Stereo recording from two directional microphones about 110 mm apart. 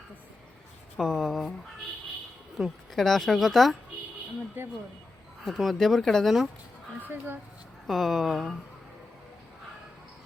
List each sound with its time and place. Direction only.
0.9 s speech: centre (ahead or behind)
2.6 s speech: centre (ahead or behind)
4.6 s speech: 20° right (ahead or behind)
5.5 s speech: centre (ahead or behind)
7.0 s speech: 20° right (ahead or behind)
7.9 s speech: centre (ahead or behind)